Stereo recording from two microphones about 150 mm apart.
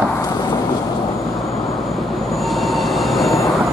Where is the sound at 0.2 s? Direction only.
25° left (ahead or behind).